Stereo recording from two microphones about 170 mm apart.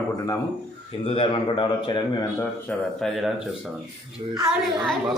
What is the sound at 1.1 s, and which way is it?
A man's voice, 30° left (ahead or behind).